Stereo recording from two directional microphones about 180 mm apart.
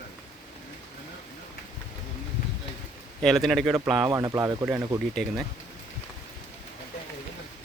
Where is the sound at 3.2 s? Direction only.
Centre (ahead or behind).